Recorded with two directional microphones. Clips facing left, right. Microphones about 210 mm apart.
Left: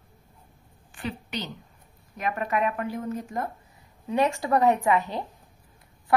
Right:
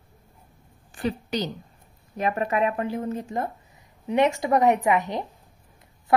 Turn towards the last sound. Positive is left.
turn(degrees=-20)  # may be behind; listen again after turning